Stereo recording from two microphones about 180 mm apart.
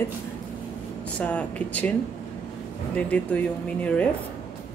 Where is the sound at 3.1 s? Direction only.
5° left (ahead or behind).